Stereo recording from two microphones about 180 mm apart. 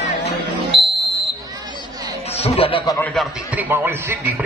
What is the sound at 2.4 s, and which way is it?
Speech, 35° left (ahead or behind).